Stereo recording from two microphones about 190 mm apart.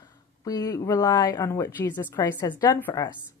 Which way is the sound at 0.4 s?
20° left (ahead or behind).